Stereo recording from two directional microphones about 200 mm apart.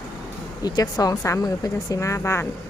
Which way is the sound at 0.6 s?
20° left (ahead or behind).